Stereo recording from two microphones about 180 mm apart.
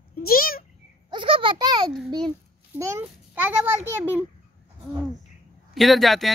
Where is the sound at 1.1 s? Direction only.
30° right (ahead or behind).